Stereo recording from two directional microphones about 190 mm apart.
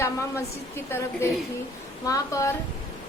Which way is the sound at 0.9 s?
10° left (ahead or behind).